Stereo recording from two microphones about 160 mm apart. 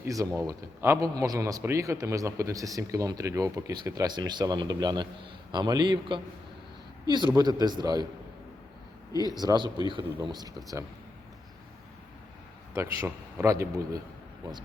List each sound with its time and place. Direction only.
0.0 s a man's voice: 20° right (ahead or behind)
9.4 s a man's voice: 25° right (ahead or behind)
12.7 s a man's voice: 20° right (ahead or behind)